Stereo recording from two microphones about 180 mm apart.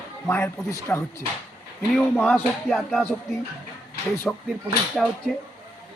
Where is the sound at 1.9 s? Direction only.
Centre (ahead or behind).